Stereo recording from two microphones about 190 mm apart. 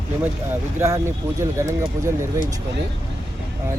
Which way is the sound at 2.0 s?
15° right (ahead or behind).